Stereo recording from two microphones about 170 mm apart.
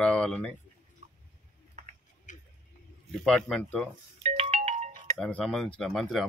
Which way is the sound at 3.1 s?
5° left (ahead or behind).